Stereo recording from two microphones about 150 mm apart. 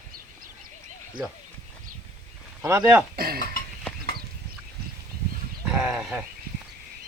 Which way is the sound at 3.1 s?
90° right.